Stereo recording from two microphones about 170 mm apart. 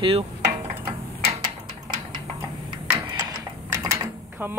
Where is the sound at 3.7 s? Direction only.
15° right (ahead or behind).